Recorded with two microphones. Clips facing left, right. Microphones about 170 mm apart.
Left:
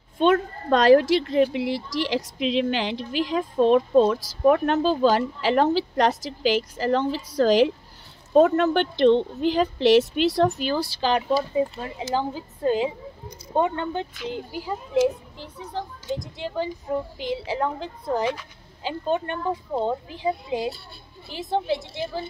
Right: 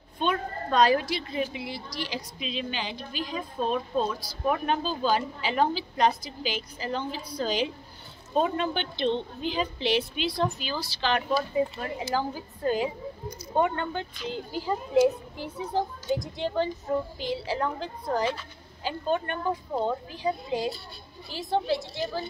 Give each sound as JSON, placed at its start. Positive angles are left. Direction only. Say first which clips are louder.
{"t": 0.2, "sound": "speech", "louder": "left 8 dB", "side_deg": 80}
{"t": 8.5, "sound": "a woman's voice", "louder": "left 9 dB", "side_deg": 75}
{"t": 11.1, "sound": "speech", "louder": "left 3 dB", "side_deg": 25}
{"t": 15.3, "sound": "a child's voice", "louder": "right 4 dB", "side_deg": -10}
{"t": 17.2, "sound": "speech", "louder": "left 3 dB", "side_deg": 20}